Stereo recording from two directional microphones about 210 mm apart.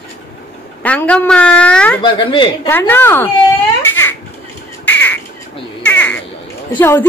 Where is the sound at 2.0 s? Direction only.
25° left (ahead or behind).